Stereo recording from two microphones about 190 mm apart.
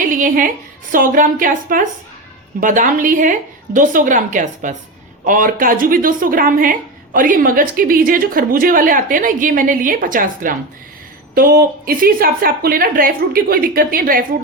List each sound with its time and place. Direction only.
0.1 s a woman's voice: 45° right (ahead or behind)